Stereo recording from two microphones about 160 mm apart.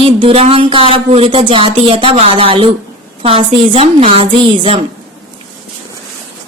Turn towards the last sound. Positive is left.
turn(degrees=-35)  # may be behind; listen again after turning